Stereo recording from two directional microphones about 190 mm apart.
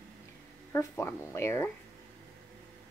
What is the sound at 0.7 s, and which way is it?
Speech, 15° left (ahead or behind).